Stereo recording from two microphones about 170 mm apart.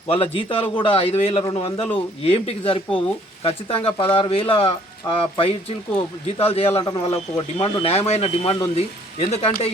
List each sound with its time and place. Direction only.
0.1 s speech: 30° left (ahead or behind)